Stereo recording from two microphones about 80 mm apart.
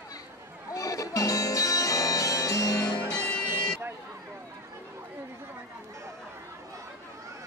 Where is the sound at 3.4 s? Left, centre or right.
Left.